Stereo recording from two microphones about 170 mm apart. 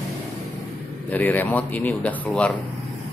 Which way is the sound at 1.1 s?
10° left (ahead or behind).